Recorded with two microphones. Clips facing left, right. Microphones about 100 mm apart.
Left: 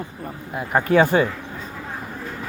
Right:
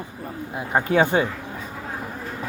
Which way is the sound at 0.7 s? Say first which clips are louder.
Left 3 dB; 15° right (ahead or behind).